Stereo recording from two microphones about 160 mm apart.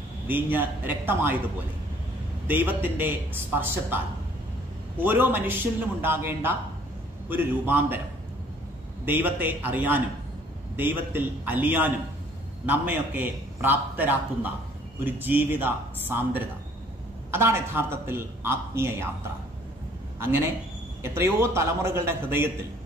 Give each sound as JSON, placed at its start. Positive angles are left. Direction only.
{"t": 0.3, "sound": "a man's voice", "side_deg": -10}
{"t": 2.4, "sound": "a man's voice", "side_deg": -10}
{"t": 9.0, "sound": "a man's voice", "side_deg": -10}
{"t": 20.2, "sound": "a man's voice", "side_deg": -15}